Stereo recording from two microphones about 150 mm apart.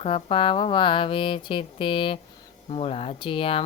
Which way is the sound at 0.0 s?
40° left (ahead or behind).